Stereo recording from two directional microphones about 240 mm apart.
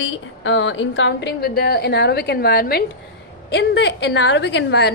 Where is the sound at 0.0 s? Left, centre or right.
Left.